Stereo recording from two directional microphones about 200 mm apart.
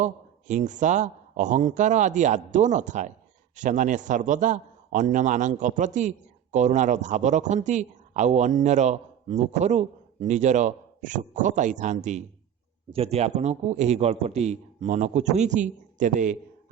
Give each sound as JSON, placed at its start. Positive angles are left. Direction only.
{"t": 0.0, "sound": "a man's voice", "side_deg": -40}